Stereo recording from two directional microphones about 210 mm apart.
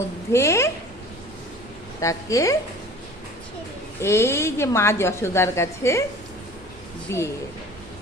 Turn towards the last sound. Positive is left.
turn(degrees=15)  # may be behind; listen again after turning